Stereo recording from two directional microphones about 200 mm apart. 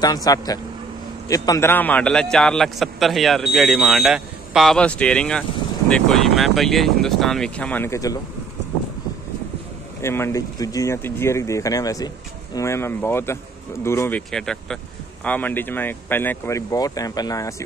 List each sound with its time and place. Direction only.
0.0 s a man's voice: 20° left (ahead or behind)
10.0 s a man's voice: 15° left (ahead or behind)